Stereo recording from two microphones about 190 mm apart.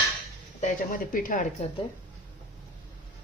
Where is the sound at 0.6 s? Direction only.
45° left (ahead or behind).